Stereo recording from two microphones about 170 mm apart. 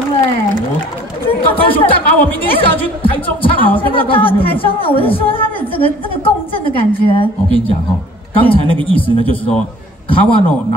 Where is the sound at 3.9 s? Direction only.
30° left (ahead or behind).